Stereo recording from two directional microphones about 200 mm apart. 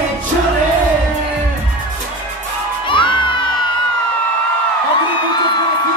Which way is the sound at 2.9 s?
25° left (ahead or behind).